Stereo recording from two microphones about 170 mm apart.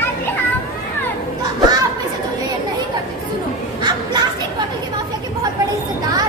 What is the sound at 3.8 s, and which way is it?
Children playing, 25° right (ahead or behind).